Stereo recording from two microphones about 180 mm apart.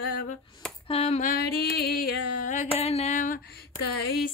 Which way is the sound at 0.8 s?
35° left (ahead or behind).